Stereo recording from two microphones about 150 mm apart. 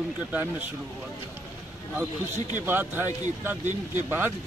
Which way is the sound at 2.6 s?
15° right (ahead or behind).